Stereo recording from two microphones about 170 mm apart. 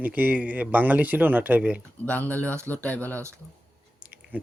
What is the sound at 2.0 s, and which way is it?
Speech, 10° left (ahead or behind).